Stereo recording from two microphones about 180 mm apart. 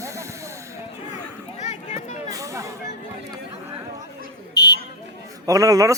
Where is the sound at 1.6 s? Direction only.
40° left (ahead or behind).